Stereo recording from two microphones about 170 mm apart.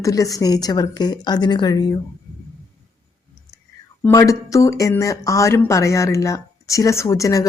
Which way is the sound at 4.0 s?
15° left (ahead or behind).